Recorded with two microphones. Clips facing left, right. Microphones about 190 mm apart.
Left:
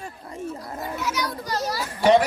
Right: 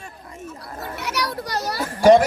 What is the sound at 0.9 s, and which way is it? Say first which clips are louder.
A child's voice: right 2 dB; 70° right (ahead or behind).